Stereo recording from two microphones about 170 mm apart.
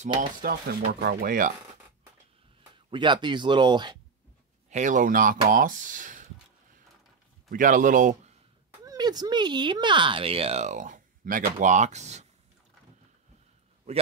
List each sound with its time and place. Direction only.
0.2 s speech: 60° right (ahead or behind)
2.9 s speech: 30° right (ahead or behind)
4.6 s speech: 45° right (ahead or behind)
7.5 s speech: 50° right (ahead or behind)
8.8 s speech: 25° right (ahead or behind); by 12.3 s 40° right (ahead or behind)